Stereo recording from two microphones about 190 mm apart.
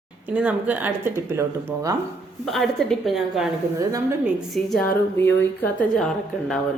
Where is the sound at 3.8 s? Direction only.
15° right (ahead or behind).